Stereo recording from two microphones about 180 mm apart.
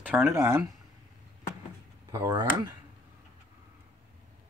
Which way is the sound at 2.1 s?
15° right (ahead or behind).